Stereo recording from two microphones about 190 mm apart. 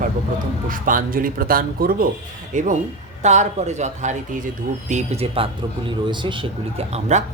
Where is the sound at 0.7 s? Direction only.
45° right (ahead or behind).